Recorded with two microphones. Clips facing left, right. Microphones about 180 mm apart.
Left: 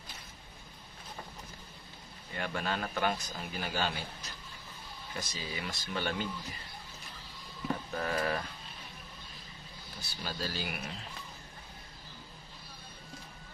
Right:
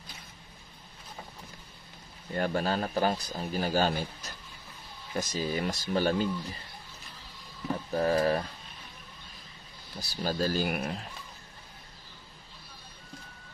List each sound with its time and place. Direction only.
2.3 s speech: 40° right (ahead or behind)
7.9 s a sound: 35° right (ahead or behind)
9.9 s speech: 40° right (ahead or behind)